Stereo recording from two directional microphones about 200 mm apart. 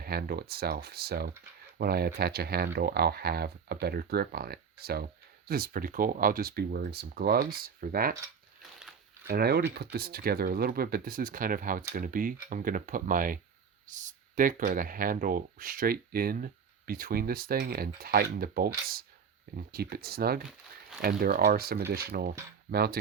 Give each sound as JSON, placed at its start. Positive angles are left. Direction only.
{"t": 0.0, "sound": "speech", "side_deg": -50}
{"t": 9.2, "sound": "speech", "side_deg": -50}
{"t": 19.7, "sound": "speech", "side_deg": -50}